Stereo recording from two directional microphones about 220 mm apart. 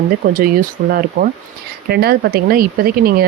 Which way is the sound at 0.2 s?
40° right (ahead or behind).